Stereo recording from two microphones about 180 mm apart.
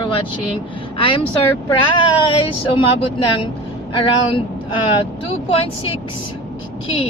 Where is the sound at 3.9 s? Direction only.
30° left (ahead or behind).